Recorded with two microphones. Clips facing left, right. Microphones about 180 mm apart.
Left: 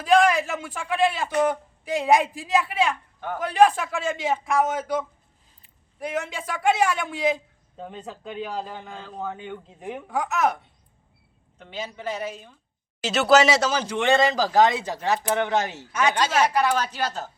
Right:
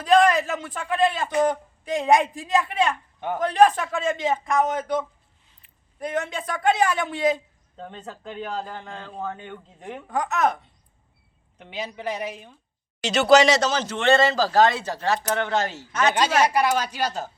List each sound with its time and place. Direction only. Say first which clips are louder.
0.0 s a sound: right 1 dB; centre (ahead or behind)
1.4 s a man's voice: right 1 dB; 5° left (ahead or behind)
3.2 s speech: right 3 dB; 20° right (ahead or behind)
3.4 s a man's voice: right 1 dB; 5° left (ahead or behind)
7.8 s a man's voice: left 1 dB; 10° left (ahead or behind)
11.5 s a woman's voice: right 1 dB; 15° right (ahead or behind)
13.0 s speech: right 2 dB; 5° left (ahead or behind)
16.1 s a woman's voice: right 2 dB; 10° right (ahead or behind)